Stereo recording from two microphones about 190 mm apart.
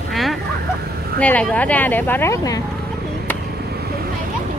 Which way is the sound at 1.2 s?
10° left (ahead or behind).